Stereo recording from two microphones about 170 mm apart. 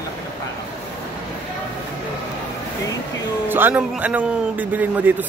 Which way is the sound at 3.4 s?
10° right (ahead or behind).